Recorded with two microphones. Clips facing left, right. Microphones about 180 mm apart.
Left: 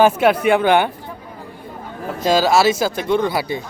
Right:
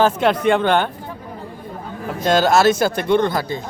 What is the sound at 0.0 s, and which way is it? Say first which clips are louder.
Speech: left 2 dB; 10° left (ahead or behind).